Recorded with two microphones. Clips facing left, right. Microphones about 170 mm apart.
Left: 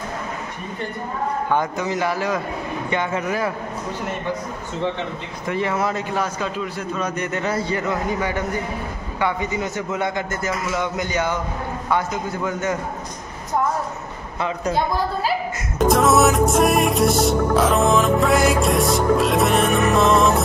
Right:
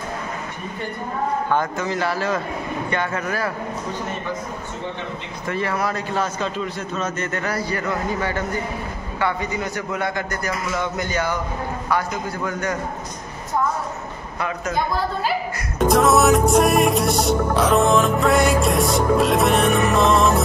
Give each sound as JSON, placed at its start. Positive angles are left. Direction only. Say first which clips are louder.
{"t": 1.5, "sound": "a man's voice", "louder": "even", "side_deg": 15}
{"t": 5.5, "sound": "a man's voice", "louder": "left 1 dB", "side_deg": 20}
{"t": 14.4, "sound": "a woman's voice", "louder": "left 3 dB", "side_deg": 30}
{"t": 15.8, "sound": "music", "louder": "even", "side_deg": 0}